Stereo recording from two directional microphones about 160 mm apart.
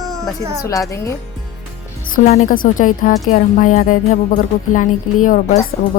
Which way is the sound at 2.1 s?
60° left (ahead or behind).